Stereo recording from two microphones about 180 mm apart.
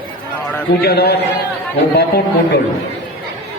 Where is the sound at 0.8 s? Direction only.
65° left (ahead or behind).